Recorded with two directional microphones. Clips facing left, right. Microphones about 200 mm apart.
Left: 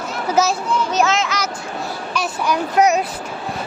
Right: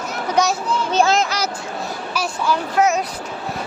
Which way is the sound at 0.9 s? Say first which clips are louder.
Right 4 dB; 30° right (ahead or behind).